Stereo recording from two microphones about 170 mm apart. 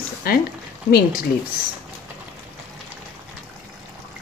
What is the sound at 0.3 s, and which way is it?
Speech, 60° left (ahead or behind).